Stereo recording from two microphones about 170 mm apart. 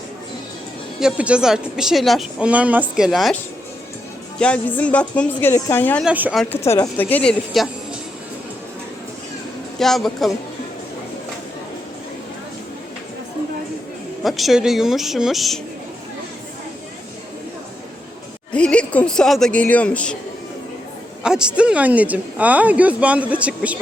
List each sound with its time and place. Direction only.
0.9 s speech: 5° right (ahead or behind)
4.4 s a woman's voice: 5° left (ahead or behind)
6.0 s speech: 10° right (ahead or behind)
6.3 s speech: 5° left (ahead or behind)
6.6 s a woman's voice: 20° left (ahead or behind); by 7.7 s 5° left (ahead or behind)
9.7 s speech: centre (ahead or behind)
14.3 s speech: centre (ahead or behind)
18.5 s a woman's voice: 5° left (ahead or behind)
21.2 s speech: 5° right (ahead or behind)